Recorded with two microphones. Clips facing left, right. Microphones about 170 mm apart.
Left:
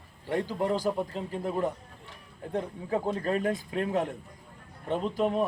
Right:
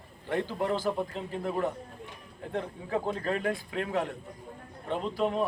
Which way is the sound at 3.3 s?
20° left (ahead or behind).